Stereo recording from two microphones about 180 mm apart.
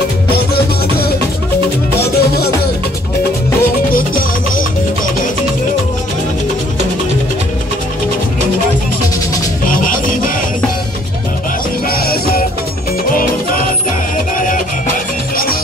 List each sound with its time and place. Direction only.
2.0 s music: 60° left (ahead or behind)
3.9 s music: 50° left (ahead or behind)
9.7 s music: 50° left (ahead or behind)
11.9 s music: 55° left (ahead or behind)
14.1 s music: 50° left (ahead or behind)